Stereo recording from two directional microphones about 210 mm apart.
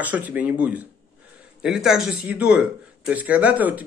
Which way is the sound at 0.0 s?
10° right (ahead or behind).